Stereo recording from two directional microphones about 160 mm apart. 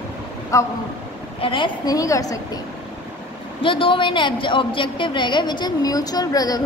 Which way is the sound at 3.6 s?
30° left (ahead or behind).